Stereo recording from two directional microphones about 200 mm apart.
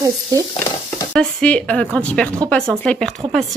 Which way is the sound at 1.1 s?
5° left (ahead or behind).